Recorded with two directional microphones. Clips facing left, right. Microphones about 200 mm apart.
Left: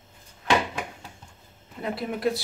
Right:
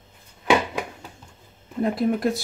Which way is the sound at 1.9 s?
45° right (ahead or behind).